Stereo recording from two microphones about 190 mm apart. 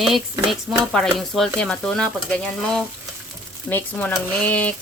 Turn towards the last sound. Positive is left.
turn(degrees=10)  # may be behind; listen again after turning